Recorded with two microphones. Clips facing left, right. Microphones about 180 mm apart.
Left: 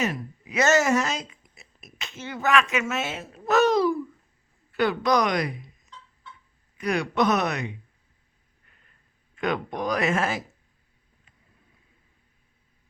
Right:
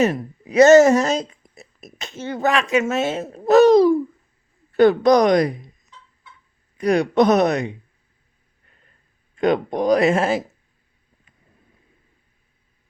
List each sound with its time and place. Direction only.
0.0 s speech: 45° right (ahead or behind)
6.7 s speech: 40° right (ahead or behind)
9.3 s speech: 35° right (ahead or behind)